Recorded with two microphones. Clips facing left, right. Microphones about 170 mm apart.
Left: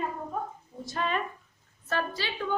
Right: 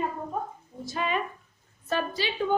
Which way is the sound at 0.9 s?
5° right (ahead or behind).